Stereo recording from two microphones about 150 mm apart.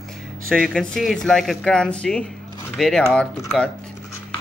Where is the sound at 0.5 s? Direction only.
5° left (ahead or behind).